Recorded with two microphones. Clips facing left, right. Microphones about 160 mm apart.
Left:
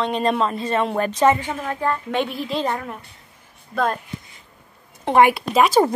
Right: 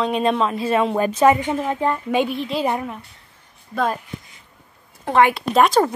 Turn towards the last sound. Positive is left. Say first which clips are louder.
# right 1 dB
turn(degrees=0)  # may be behind; listen again after turning